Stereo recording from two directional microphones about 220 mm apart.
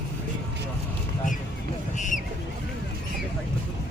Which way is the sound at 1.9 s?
35° left (ahead or behind).